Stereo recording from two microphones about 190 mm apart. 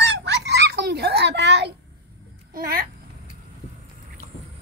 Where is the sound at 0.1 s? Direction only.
65° right (ahead or behind).